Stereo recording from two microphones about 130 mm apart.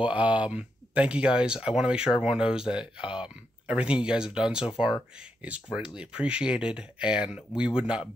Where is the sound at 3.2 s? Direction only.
10° right (ahead or behind).